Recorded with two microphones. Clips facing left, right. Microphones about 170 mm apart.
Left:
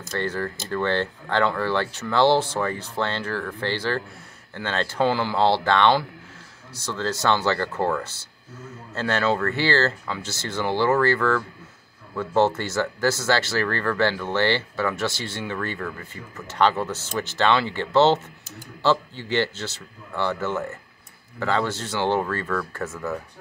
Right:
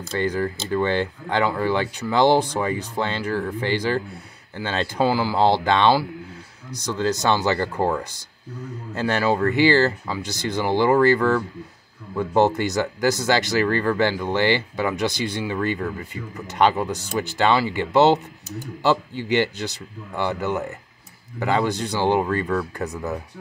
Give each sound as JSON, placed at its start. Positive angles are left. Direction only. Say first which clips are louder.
{"t": 0.2, "sound": "speech", "louder": "right 5 dB", "side_deg": -15}